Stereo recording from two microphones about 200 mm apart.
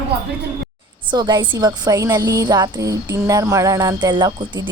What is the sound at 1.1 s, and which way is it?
Speech, 20° right (ahead or behind).